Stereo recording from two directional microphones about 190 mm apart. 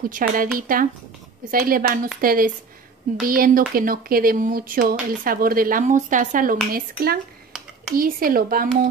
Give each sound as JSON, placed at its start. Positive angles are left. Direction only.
{"t": 0.0, "sound": "speech", "side_deg": -50}